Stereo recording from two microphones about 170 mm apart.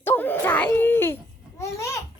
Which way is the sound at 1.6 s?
15° left (ahead or behind).